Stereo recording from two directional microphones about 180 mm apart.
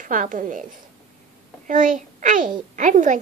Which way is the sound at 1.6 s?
45° right (ahead or behind).